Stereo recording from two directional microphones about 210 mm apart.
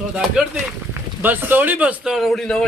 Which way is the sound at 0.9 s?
10° right (ahead or behind).